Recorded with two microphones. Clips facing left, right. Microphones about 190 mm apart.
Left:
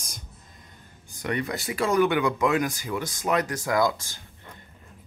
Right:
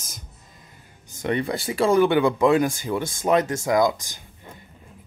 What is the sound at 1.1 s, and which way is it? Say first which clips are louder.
Speech: right 4 dB; 25° right (ahead or behind).